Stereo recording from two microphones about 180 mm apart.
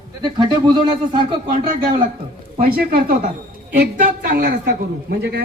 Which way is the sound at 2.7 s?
60° right (ahead or behind).